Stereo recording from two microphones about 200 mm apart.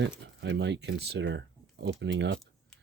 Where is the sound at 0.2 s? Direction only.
60° right (ahead or behind).